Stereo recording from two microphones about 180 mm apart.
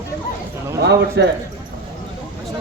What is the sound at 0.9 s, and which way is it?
Speech, 65° right (ahead or behind).